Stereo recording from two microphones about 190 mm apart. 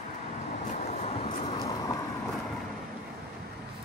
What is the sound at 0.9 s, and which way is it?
Vehicle, 35° left (ahead or behind).